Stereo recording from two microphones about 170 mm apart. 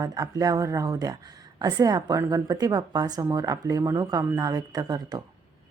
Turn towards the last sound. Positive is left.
turn(degrees=-20)  # may be behind; listen again after turning